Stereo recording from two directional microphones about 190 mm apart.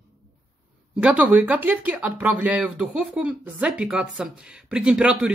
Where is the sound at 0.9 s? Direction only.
5° right (ahead or behind).